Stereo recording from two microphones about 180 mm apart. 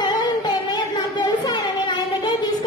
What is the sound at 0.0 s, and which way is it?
Music, 25° left (ahead or behind).